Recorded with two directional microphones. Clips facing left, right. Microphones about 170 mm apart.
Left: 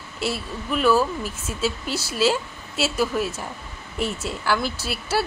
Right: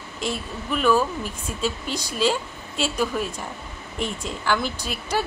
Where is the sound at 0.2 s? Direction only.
5° left (ahead or behind).